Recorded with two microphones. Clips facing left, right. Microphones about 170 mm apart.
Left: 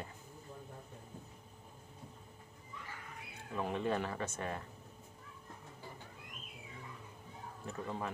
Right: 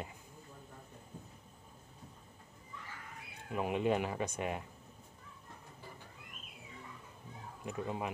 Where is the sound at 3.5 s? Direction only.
15° right (ahead or behind).